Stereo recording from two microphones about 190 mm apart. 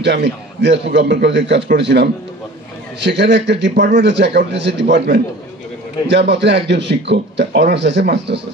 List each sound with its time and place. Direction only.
0.0 s a man's voice: 65° right (ahead or behind)